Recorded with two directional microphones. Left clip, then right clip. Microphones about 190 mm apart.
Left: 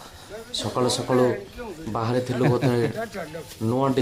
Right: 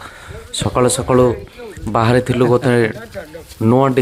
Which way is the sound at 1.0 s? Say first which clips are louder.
Right 8 dB; 30° right (ahead or behind).